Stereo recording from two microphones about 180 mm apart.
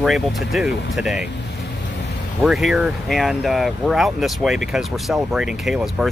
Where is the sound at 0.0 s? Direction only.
Centre (ahead or behind).